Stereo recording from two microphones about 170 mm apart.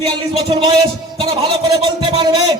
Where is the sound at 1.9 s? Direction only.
30° right (ahead or behind).